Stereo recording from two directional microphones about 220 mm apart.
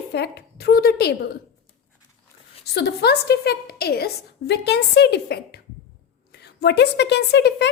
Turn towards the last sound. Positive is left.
turn(degrees=50)  # may be behind; listen again after turning